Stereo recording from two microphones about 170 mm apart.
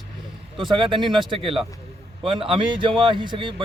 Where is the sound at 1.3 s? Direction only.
35° right (ahead or behind).